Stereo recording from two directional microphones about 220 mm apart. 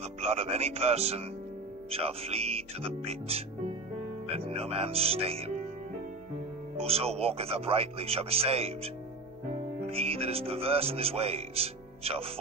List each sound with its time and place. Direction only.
0.0 s speech: 30° right (ahead or behind)
6.8 s speech: 25° right (ahead or behind)